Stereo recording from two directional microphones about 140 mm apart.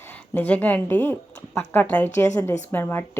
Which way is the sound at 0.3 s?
10° left (ahead or behind).